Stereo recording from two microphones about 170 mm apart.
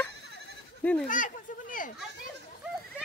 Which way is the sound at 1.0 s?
50° left (ahead or behind).